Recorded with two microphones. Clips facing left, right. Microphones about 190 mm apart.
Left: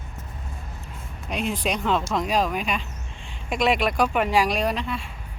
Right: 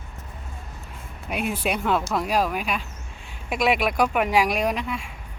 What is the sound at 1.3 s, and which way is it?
Speech, 5° right (ahead or behind).